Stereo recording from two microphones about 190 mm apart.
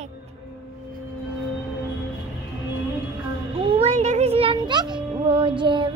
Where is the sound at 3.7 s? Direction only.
35° right (ahead or behind).